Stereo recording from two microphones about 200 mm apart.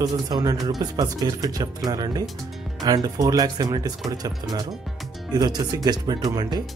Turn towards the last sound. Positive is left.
turn(degrees=-20)  # may be behind; listen again after turning